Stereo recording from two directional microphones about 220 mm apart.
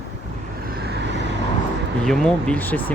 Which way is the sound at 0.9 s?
55° right (ahead or behind).